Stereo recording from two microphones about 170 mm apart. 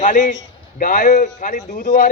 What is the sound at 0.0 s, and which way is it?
A man's voice, 50° left (ahead or behind).